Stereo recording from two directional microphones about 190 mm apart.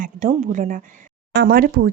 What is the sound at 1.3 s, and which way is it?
Speech, 60° right (ahead or behind).